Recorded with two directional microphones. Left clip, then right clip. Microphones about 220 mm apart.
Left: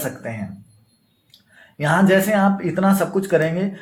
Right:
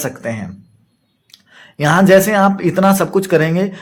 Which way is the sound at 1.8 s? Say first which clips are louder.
Right 7 dB; 50° right (ahead or behind).